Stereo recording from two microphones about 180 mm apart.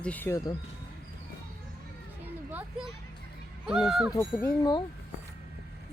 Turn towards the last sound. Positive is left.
turn(degrees=20)  # may be behind; listen again after turning